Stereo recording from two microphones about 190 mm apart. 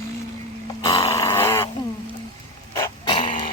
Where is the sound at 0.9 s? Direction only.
30° left (ahead or behind).